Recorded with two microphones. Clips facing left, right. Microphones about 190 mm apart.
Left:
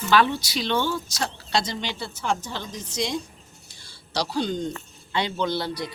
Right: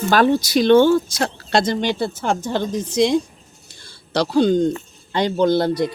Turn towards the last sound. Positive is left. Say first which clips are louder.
# right 10 dB
turn(degrees=-50)  # may be behind; listen again after turning